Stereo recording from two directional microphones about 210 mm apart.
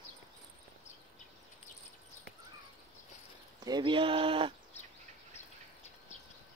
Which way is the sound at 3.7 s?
20° right (ahead or behind).